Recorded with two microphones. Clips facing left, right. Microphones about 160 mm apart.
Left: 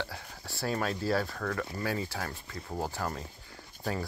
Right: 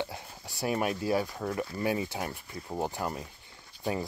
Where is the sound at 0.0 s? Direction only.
20° right (ahead or behind).